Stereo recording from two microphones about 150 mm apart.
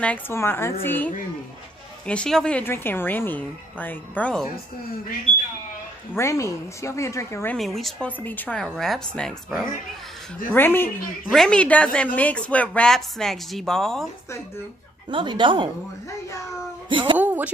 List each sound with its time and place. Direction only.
0.0 s speech: 15° left (ahead or behind)
6.1 s a woman's voice: 20° left (ahead or behind)
7.5 s speech: centre (ahead or behind)
8.2 s speech: 10° left (ahead or behind)
10.5 s speech: 15° left (ahead or behind)
15.0 s speech: 35° right (ahead or behind)
16.9 s speech: 35° right (ahead or behind)
17.2 s a sound: 10° right (ahead or behind)